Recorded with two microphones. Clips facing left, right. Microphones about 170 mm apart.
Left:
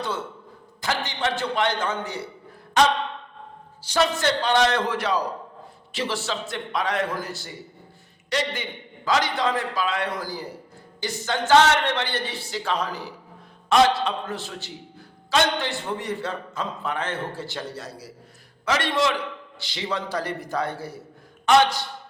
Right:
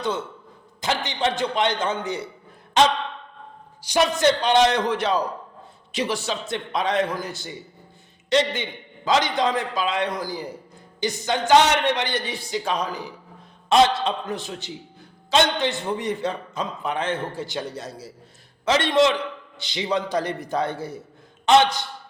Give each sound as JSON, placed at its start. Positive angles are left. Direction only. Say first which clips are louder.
{"t": 0.8, "sound": "a man's voice", "louder": "right 2 dB", "side_deg": -20}
{"t": 3.8, "sound": "a man's voice", "louder": "right 3 dB", "side_deg": -15}